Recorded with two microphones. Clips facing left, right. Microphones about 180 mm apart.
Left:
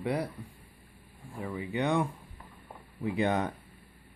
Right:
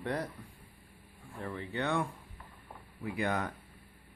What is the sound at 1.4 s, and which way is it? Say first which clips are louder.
Speech: left 4 dB; 10° left (ahead or behind).